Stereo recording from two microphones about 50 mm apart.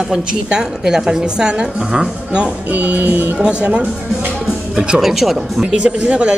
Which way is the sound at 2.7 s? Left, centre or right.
Right.